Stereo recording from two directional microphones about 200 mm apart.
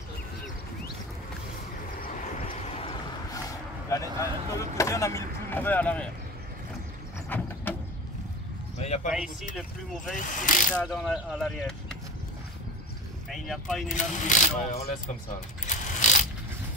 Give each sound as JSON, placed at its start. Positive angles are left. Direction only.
{"t": 2.0, "sound": "vehicle", "side_deg": 45}
{"t": 2.4, "sound": "vehicle", "side_deg": 30}
{"t": 3.9, "sound": "speech", "side_deg": 15}
{"t": 7.2, "sound": "a sound", "side_deg": 10}
{"t": 8.7, "sound": "speech", "side_deg": 35}
{"t": 9.1, "sound": "speech", "side_deg": -5}
{"t": 10.1, "sound": "speech", "side_deg": 40}
{"t": 10.7, "sound": "speech", "side_deg": 5}
{"t": 13.3, "sound": "speech", "side_deg": 0}
{"t": 13.8, "sound": "speech", "side_deg": 40}
{"t": 15.6, "sound": "a sound", "side_deg": 40}